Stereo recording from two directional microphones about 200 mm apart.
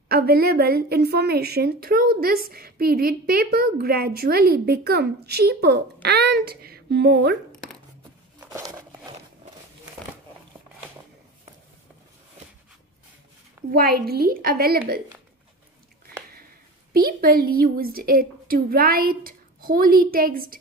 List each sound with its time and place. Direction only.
0.1 s a woman's voice: 50° right (ahead or behind)
8.4 s a sound: 15° right (ahead or behind)
13.7 s a woman's voice: 50° right (ahead or behind)
16.9 s a woman's voice: 50° right (ahead or behind)